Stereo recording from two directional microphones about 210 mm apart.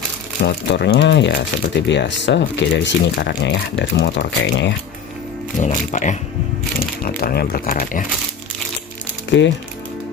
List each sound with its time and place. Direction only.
0.4 s speech: 50° left (ahead or behind)
5.6 s speech: 35° left (ahead or behind)
9.3 s speech: 60° left (ahead or behind)